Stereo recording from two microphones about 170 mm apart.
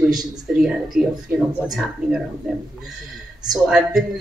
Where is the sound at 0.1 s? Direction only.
5° right (ahead or behind).